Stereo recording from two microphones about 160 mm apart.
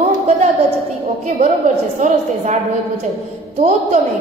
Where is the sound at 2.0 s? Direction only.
45° right (ahead or behind).